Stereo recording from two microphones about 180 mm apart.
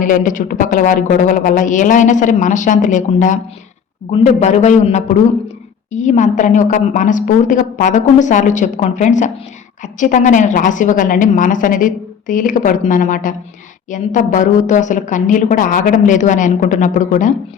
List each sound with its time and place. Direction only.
0.0 s a woman's voice: 45° left (ahead or behind)